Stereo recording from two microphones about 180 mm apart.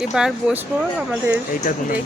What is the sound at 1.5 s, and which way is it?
Speech, 50° left (ahead or behind).